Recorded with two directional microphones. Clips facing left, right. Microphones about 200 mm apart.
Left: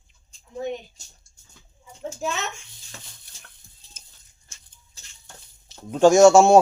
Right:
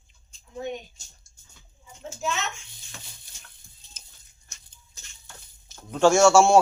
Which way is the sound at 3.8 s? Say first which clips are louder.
Left 1 dB; 35° left (ahead or behind).